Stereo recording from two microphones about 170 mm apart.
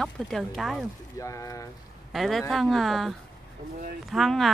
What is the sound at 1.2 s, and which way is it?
Speech, 20° left (ahead or behind).